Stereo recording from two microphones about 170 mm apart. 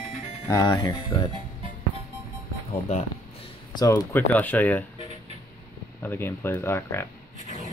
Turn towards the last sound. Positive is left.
turn(degrees=15)  # may be behind; listen again after turning